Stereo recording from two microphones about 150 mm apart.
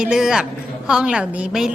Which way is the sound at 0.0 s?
5° right (ahead or behind).